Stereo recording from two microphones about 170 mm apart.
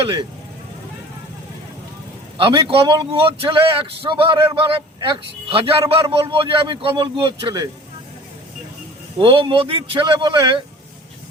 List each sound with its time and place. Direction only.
2.4 s a man's voice: 30° right (ahead or behind)
9.2 s a man's voice: 30° right (ahead or behind)